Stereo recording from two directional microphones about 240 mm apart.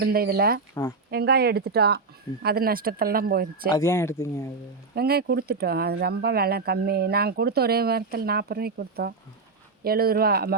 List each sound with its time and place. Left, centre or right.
0.0 s speech: right
0.7 s speech: centre
1.1 s speech: right
3.7 s speech: centre
4.9 s speech: right